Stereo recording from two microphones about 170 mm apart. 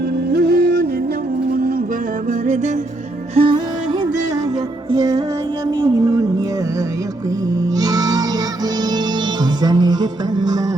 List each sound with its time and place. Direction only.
0.3 s music: 65° right (ahead or behind)
3.3 s music: 30° right (ahead or behind)
4.9 s music: 20° right (ahead or behind)
5.8 s a sound: 20° right (ahead or behind)
7.8 s music: 20° right (ahead or behind)
9.6 s music: 25° right (ahead or behind)